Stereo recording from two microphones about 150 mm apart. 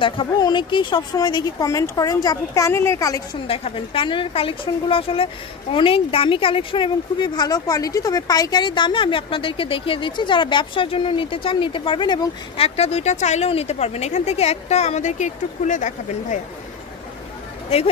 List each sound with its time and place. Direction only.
0.0 s speech: 30° left (ahead or behind)
3.4 s a woman's voice: 40° left (ahead or behind)
12.6 s a woman's voice: 45° left (ahead or behind)